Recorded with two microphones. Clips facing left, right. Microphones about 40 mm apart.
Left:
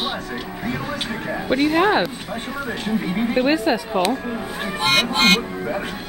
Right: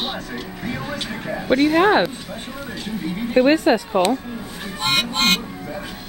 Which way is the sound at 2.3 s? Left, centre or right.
Left.